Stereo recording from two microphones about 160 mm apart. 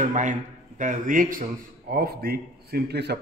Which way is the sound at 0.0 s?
50° right (ahead or behind).